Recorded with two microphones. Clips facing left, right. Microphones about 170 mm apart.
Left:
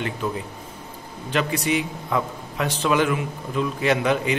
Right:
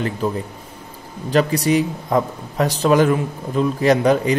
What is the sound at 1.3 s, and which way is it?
A man's voice, 40° right (ahead or behind).